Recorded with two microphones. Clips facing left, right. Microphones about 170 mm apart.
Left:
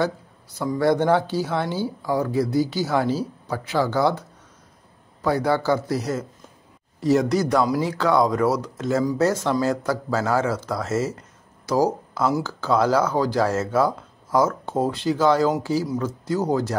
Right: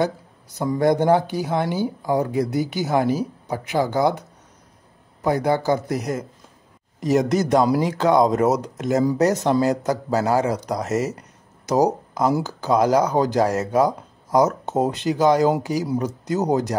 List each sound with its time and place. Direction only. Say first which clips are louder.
0.0 s speech: right 1 dB; 20° right (ahead or behind)
5.2 s speech: right 1 dB; 20° right (ahead or behind)